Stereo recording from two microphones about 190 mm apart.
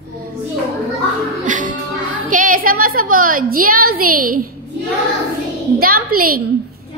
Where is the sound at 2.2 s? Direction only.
45° right (ahead or behind).